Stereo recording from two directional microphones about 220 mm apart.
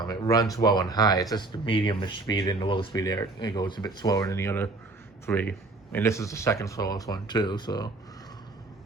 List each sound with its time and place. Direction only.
0.1 s speech: 15° left (ahead or behind)